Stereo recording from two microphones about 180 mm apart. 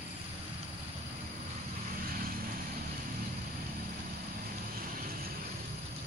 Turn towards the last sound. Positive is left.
turn(degrees=-50)  # may be behind; listen again after turning